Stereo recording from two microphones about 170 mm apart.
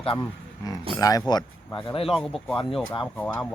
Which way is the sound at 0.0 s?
35° left (ahead or behind).